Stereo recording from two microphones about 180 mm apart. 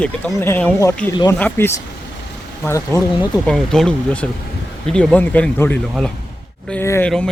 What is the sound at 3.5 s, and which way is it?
Speech, centre (ahead or behind).